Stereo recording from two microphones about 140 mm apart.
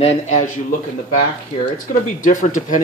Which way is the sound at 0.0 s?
50° left (ahead or behind).